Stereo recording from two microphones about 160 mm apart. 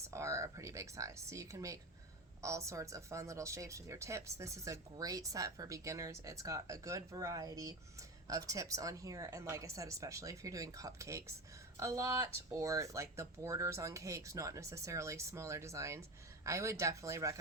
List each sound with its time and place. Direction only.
0.1 s a woman's voice: 20° right (ahead or behind)